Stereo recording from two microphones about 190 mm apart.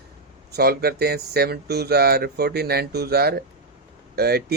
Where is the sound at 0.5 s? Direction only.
55° right (ahead or behind).